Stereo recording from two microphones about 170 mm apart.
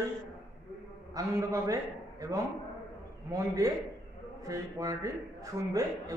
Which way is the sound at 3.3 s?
20° right (ahead or behind).